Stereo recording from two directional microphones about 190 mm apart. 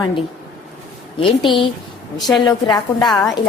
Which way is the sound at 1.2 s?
25° left (ahead or behind).